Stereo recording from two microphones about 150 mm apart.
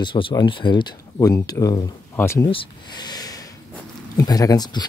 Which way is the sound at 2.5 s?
30° left (ahead or behind).